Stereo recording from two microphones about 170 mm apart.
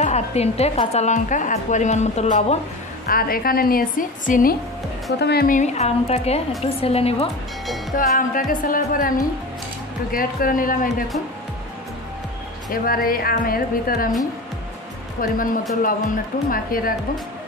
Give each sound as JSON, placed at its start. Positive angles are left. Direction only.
{"t": 0.0, "sound": "a woman's voice", "side_deg": 40}
{"t": 3.1, "sound": "a woman's voice", "side_deg": 60}
{"t": 5.2, "sound": "a woman's voice", "side_deg": 65}
{"t": 5.6, "sound": "a woman's voice", "side_deg": 40}
{"t": 7.9, "sound": "a woman's voice", "side_deg": 55}
{"t": 10.1, "sound": "a woman's voice", "side_deg": 55}
{"t": 12.7, "sound": "a woman's voice", "side_deg": 60}
{"t": 15.1, "sound": "a woman's voice", "side_deg": 55}
{"t": 16.4, "sound": "a woman's voice", "side_deg": 55}